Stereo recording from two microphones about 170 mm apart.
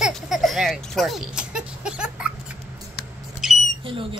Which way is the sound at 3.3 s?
Centre (ahead or behind).